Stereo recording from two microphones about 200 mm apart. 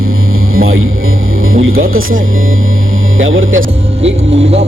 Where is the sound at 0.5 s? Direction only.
90° right.